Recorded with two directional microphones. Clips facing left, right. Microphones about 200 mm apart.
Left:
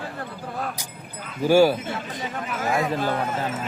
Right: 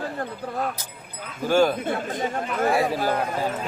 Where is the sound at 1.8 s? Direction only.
50° right (ahead or behind).